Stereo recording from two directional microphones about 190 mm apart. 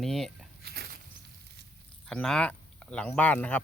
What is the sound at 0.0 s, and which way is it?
Speech, centre (ahead or behind).